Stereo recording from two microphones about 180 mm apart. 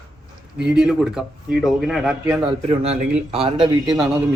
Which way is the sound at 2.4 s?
35° right (ahead or behind).